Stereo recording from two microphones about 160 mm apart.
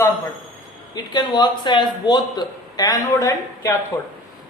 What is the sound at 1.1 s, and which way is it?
A man's voice, 25° left (ahead or behind).